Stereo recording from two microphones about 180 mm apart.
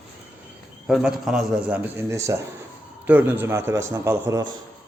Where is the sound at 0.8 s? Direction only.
Centre (ahead or behind).